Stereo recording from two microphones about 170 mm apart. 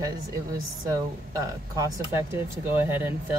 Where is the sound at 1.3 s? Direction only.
20° right (ahead or behind).